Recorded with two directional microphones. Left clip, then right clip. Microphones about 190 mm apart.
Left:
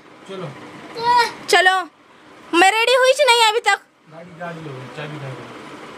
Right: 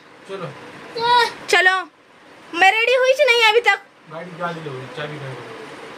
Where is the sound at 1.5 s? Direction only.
15° left (ahead or behind).